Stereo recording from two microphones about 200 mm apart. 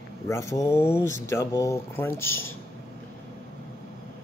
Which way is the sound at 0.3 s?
15° left (ahead or behind).